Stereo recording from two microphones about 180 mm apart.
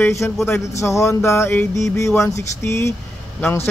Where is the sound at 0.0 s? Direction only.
15° left (ahead or behind).